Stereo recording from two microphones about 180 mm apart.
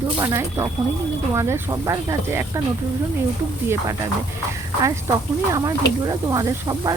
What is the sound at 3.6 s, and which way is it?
Speech, 15° right (ahead or behind).